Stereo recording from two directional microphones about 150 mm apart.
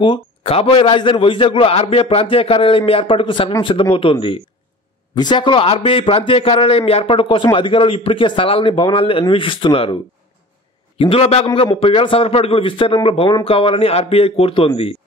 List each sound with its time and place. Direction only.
0.0 s a man's voice: 35° left (ahead or behind)
11.0 s a man's voice: 40° left (ahead or behind)